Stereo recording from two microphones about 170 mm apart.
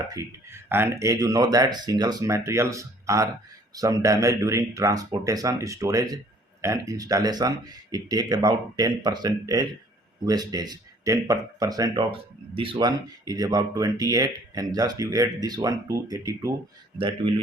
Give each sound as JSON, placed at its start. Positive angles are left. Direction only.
{"t": 0.1, "sound": "speech", "side_deg": -15}